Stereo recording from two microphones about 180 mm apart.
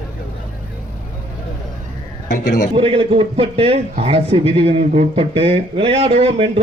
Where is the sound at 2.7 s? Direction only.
30° right (ahead or behind).